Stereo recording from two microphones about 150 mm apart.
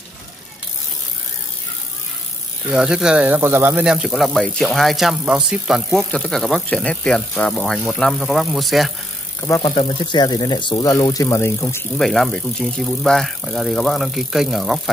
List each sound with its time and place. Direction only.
2.7 s speech: 5° right (ahead or behind)
9.6 s speech: 35° left (ahead or behind); by 11.8 s 15° left (ahead or behind)
12.0 s speech: centre (ahead or behind)